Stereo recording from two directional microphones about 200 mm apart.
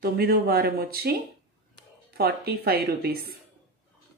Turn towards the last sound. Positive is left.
turn(degrees=-50)  # may be behind; listen again after turning